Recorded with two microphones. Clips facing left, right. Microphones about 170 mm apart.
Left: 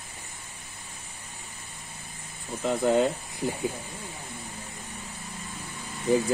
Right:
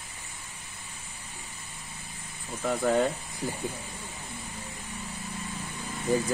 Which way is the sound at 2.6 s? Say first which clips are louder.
Left 2 dB; 20° left (ahead or behind).